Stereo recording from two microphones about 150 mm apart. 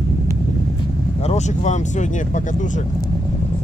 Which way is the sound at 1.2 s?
50° left (ahead or behind).